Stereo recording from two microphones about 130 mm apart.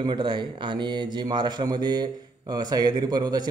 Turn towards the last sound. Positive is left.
turn(degrees=-30)  # may be behind; listen again after turning